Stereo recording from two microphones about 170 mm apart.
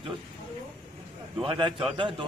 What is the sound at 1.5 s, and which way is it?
Speech, 30° right (ahead or behind).